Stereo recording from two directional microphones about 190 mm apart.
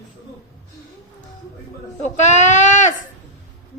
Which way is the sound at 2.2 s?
40° left (ahead or behind).